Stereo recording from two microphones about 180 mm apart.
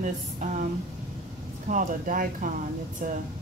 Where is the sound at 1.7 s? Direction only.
45° right (ahead or behind).